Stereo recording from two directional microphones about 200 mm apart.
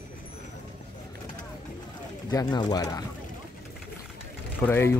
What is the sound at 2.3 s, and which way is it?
Speech, 20° left (ahead or behind).